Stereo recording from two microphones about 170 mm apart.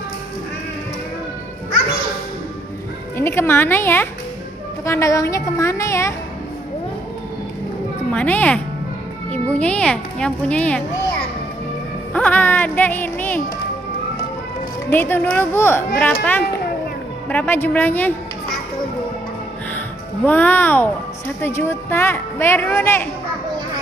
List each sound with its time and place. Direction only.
3.2 s a woman's voice: 15° left (ahead or behind)
8.1 s a woman's voice: 10° left (ahead or behind)
12.1 s speech: 10° left (ahead or behind)
14.9 s a woman's voice: 10° left (ahead or behind)
20.2 s a woman's voice: 10° left (ahead or behind)